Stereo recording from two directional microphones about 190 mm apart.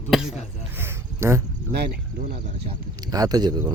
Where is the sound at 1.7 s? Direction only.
50° right (ahead or behind).